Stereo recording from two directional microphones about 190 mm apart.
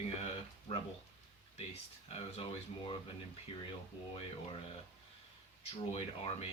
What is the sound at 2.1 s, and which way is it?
Speech, 30° left (ahead or behind).